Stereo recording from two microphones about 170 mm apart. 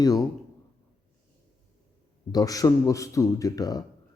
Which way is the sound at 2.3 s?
20° left (ahead or behind).